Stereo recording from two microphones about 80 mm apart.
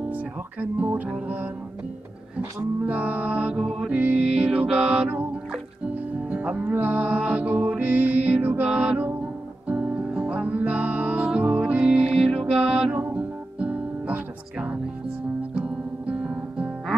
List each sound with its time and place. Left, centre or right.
0.1 s speech: centre
2.8 s music: centre